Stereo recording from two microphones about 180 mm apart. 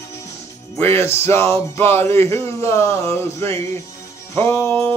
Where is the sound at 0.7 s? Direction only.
15° left (ahead or behind).